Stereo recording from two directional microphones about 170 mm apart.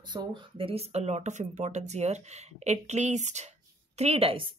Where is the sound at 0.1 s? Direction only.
25° right (ahead or behind).